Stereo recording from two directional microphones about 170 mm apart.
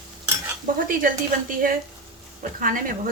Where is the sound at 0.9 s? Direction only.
55° right (ahead or behind).